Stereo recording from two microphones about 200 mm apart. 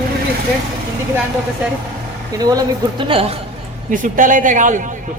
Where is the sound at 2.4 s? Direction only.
20° right (ahead or behind).